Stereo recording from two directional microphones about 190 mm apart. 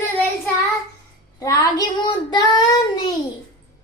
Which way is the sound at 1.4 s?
20° left (ahead or behind).